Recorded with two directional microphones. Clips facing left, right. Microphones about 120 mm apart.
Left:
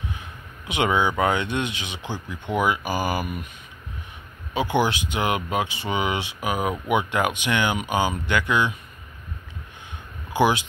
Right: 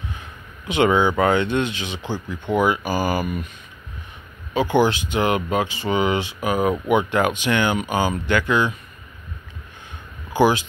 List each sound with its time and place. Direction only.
0.7 s speech: 15° left (ahead or behind)
4.6 s speech: 15° left (ahead or behind)
10.3 s speech: 15° left (ahead or behind)